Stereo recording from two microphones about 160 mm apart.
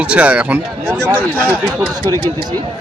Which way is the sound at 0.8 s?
5° left (ahead or behind).